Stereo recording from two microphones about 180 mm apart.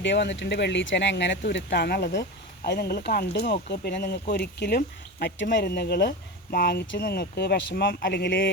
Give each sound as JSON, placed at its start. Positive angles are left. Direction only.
{"t": 0.0, "sound": "speech", "side_deg": 75}
{"t": 2.6, "sound": "speech", "side_deg": 65}
{"t": 5.2, "sound": "speech", "side_deg": 75}